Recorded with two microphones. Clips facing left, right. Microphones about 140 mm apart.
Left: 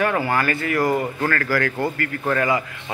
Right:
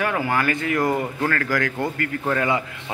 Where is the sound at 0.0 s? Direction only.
10° right (ahead or behind).